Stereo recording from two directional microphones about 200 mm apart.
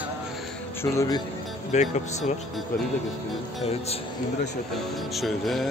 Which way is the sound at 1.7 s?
35° left (ahead or behind).